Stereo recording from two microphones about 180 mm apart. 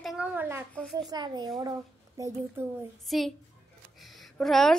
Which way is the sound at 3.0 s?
Centre (ahead or behind).